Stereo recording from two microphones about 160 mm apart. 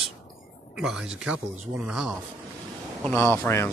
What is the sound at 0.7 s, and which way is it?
Speech, 5° right (ahead or behind).